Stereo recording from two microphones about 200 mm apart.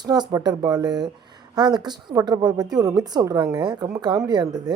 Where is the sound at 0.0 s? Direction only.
20° right (ahead or behind).